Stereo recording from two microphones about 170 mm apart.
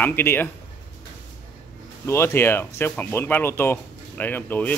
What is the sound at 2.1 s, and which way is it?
Speech, 15° left (ahead or behind).